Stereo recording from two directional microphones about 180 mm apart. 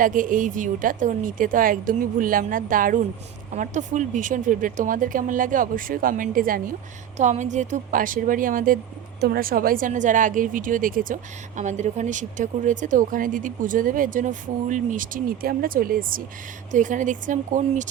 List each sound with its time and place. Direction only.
0.0 s a woman's voice: 45° right (ahead or behind)